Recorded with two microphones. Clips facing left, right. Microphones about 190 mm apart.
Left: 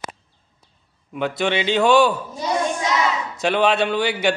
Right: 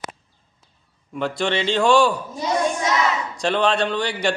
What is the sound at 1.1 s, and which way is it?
Speech, 5° left (ahead or behind).